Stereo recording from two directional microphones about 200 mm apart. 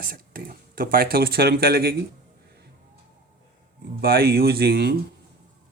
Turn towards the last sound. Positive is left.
turn(degrees=-55)  # may be behind; listen again after turning